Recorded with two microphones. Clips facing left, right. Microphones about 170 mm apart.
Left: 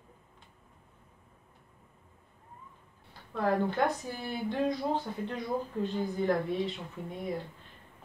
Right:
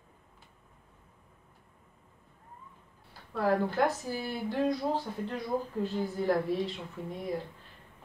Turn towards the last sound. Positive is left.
turn(degrees=0)  # may be behind; listen again after turning